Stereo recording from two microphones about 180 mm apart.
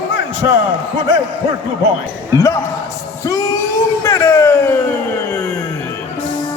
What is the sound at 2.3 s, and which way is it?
Speech, 15° left (ahead or behind).